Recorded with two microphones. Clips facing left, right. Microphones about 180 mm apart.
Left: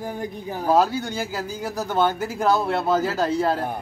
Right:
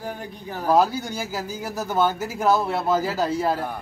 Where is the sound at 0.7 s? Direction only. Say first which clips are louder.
Right 1 dB; centre (ahead or behind).